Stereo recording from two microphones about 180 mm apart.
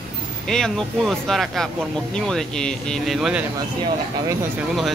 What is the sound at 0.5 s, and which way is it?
Speech, 5° left (ahead or behind).